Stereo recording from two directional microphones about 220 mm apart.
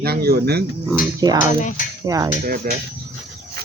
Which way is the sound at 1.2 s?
15° right (ahead or behind).